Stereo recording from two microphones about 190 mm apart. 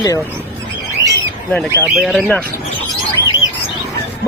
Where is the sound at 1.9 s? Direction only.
Centre (ahead or behind).